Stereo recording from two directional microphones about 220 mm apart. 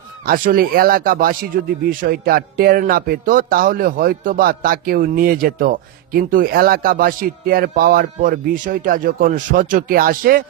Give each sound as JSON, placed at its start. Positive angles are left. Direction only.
{"t": 0.3, "sound": "speech", "side_deg": -40}